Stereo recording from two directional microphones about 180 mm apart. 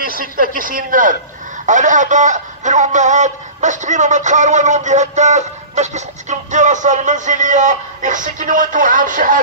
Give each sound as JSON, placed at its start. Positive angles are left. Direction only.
{"t": 0.6, "sound": "speech", "side_deg": -50}